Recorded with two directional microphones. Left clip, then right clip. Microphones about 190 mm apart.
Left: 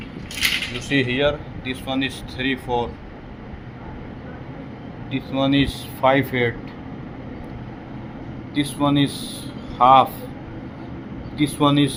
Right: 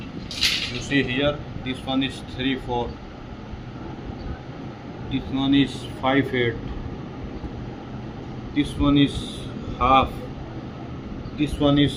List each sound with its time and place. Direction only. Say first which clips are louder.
0.9 s a man's voice: left 3 dB; 25° left (ahead or behind)
5.1 s a man's voice: left 2 dB; 30° left (ahead or behind)
8.5 s a man's voice: left 1 dB; 30° left (ahead or behind)
11.3 s a man's voice: left 2 dB; 30° left (ahead or behind)